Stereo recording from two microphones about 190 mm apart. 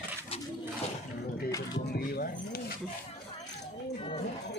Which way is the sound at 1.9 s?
50° left (ahead or behind).